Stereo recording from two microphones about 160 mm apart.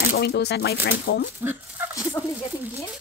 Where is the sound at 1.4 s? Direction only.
15° right (ahead or behind).